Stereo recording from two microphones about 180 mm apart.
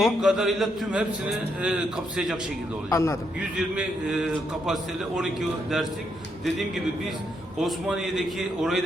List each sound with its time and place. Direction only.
0.0 s a man's voice: 5° right (ahead or behind)
2.9 s a man's voice: 15° left (ahead or behind)
3.6 s a man's voice: 5° right (ahead or behind)
7.6 s a man's voice: centre (ahead or behind)